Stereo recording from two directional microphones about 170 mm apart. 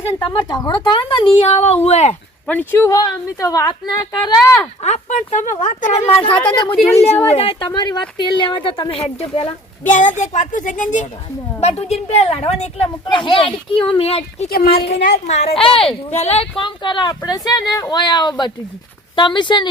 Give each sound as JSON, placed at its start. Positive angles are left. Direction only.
{"t": 0.2, "sound": "speech", "side_deg": 30}
{"t": 2.5, "sound": "speech", "side_deg": 15}
{"t": 4.8, "sound": "speech", "side_deg": 45}
{"t": 6.1, "sound": "speech", "side_deg": 30}
{"t": 6.9, "sound": "speech", "side_deg": 40}
{"t": 9.8, "sound": "speech", "side_deg": 45}
{"t": 13.1, "sound": "speech", "side_deg": 30}
{"t": 14.5, "sound": "a woman's voice", "side_deg": 60}
{"t": 15.5, "sound": "speech", "side_deg": 35}